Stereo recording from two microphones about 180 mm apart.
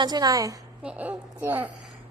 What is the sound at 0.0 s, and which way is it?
Speech, 20° right (ahead or behind).